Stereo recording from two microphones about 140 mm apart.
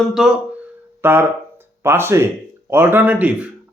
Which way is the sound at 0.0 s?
5° right (ahead or behind).